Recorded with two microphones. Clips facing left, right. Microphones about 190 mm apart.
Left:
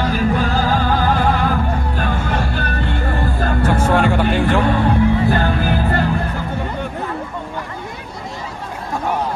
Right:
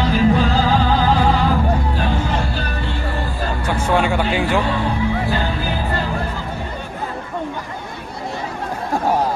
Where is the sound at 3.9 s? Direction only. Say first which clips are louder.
Right 1 dB; 5° right (ahead or behind).